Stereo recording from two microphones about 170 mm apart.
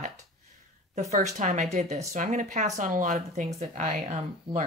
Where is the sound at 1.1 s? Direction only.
45° right (ahead or behind).